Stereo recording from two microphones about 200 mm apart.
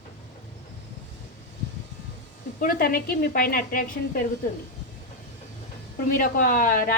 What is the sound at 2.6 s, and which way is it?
A woman's voice, 45° left (ahead or behind).